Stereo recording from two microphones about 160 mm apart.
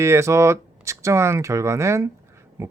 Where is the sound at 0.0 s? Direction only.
20° right (ahead or behind).